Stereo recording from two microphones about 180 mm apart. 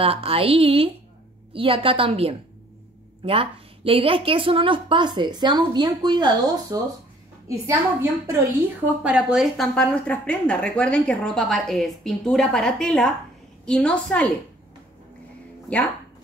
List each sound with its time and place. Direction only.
0.0 s a woman's voice: 30° right (ahead or behind); by 8.4 s 15° right (ahead or behind)
9.0 s speech: 5° right (ahead or behind)